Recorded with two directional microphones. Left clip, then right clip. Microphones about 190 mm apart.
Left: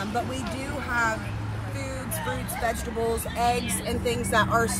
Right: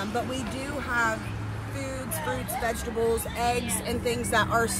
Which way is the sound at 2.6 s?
10° right (ahead or behind).